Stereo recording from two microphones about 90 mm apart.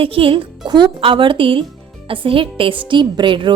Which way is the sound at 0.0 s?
90° right.